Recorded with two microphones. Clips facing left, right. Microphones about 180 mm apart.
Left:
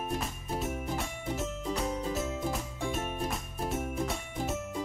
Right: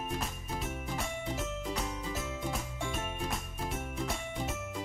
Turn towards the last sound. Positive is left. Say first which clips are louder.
# left 2 dB
turn(degrees=0)  # may be behind; listen again after turning